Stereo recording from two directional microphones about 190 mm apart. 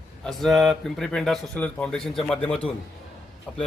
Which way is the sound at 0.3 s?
Centre (ahead or behind).